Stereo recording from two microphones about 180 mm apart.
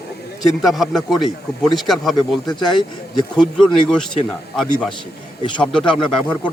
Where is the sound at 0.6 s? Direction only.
Centre (ahead or behind).